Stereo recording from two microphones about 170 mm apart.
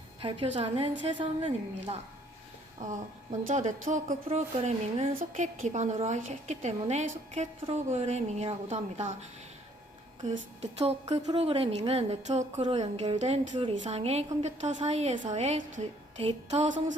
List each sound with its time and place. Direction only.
0.2 s a woman's voice: 30° right (ahead or behind)
2.8 s a woman's voice: 50° right (ahead or behind)
4.3 s a woman's voice: 40° right (ahead or behind)
10.2 s a woman's voice: 40° right (ahead or behind)